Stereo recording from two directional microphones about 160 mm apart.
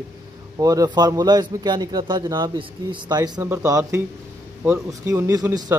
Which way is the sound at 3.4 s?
15° right (ahead or behind).